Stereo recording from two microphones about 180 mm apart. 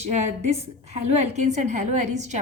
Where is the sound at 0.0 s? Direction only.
40° right (ahead or behind).